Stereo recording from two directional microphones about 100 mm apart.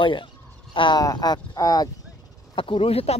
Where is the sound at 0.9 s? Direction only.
40° left (ahead or behind).